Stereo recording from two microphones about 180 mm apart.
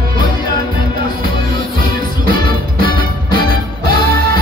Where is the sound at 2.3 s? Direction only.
55° right (ahead or behind).